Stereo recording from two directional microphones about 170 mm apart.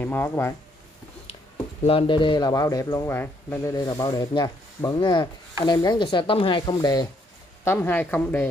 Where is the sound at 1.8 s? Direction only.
30° left (ahead or behind).